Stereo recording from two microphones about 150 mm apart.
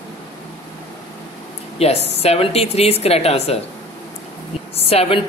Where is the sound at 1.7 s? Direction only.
45° left (ahead or behind).